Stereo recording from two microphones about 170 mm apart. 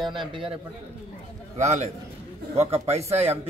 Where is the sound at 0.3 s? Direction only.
30° right (ahead or behind).